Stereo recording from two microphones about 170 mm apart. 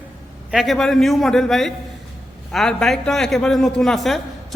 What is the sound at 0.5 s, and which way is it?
A man's voice, centre (ahead or behind).